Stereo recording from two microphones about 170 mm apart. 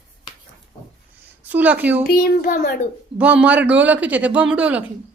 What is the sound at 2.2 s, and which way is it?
Speech, 60° left (ahead or behind).